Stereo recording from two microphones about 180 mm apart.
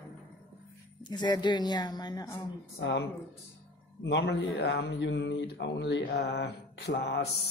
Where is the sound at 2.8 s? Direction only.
70° left (ahead or behind).